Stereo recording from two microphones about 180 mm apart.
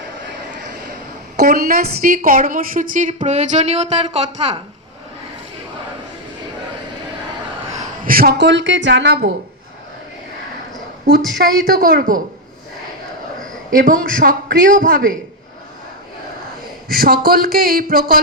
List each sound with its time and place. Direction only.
1.4 s a woman's voice: 60° right (ahead or behind); by 4.6 s 30° right (ahead or behind)
8.0 s a woman's voice: 55° right (ahead or behind)
11.6 s a woman's voice: 55° right (ahead or behind)
13.7 s a woman's voice: 50° right (ahead or behind)
16.9 s speech: 55° right (ahead or behind)